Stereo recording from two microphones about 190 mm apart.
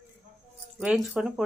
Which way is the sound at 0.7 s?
Centre (ahead or behind).